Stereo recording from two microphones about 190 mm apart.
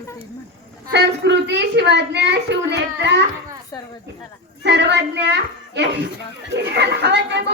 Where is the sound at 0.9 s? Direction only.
65° right (ahead or behind).